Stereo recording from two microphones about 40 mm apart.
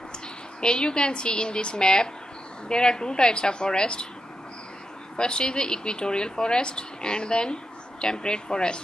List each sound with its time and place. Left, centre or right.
0.6 s speech: left
5.1 s speech: left